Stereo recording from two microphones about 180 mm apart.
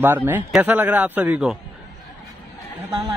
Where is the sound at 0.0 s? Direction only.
10° right (ahead or behind).